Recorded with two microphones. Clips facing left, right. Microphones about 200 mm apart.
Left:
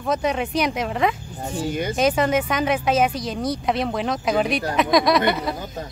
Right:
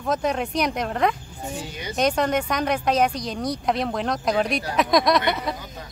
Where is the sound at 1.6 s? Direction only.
50° left (ahead or behind).